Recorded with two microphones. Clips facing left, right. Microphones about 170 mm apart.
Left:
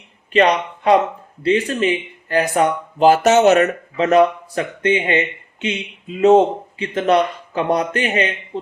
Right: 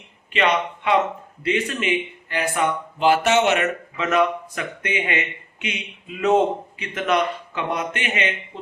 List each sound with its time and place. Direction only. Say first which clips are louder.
0.3 s speech: left 6 dB; 35° left (ahead or behind)